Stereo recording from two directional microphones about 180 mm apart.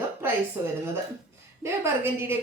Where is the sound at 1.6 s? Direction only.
15° right (ahead or behind).